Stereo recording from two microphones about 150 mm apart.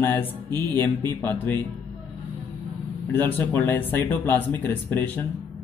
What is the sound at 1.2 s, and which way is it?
Speech, 15° left (ahead or behind).